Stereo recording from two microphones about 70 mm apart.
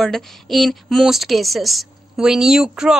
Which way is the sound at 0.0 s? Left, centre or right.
Centre.